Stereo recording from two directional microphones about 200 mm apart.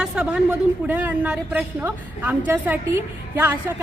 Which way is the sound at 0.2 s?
5° right (ahead or behind).